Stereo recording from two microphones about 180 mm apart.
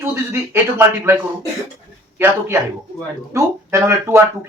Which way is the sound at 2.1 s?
15° right (ahead or behind).